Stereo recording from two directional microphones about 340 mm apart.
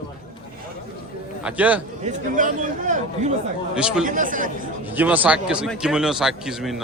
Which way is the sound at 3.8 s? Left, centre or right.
Centre.